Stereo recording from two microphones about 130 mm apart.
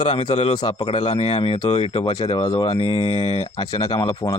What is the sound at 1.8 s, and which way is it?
Speech, 50° left (ahead or behind).